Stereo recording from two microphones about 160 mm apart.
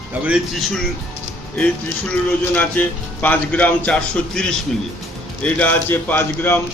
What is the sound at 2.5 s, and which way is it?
A man's voice, 10° left (ahead or behind).